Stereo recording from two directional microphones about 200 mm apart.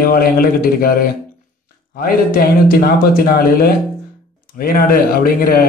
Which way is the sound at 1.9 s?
45° left (ahead or behind).